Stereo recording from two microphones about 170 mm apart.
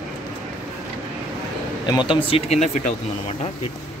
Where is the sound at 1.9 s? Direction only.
25° left (ahead or behind).